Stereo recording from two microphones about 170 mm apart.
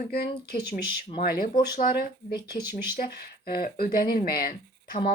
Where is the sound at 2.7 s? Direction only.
10° right (ahead or behind).